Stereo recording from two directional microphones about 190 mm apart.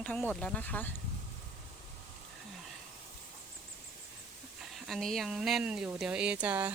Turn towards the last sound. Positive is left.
turn(degrees=-10)  # may be behind; listen again after turning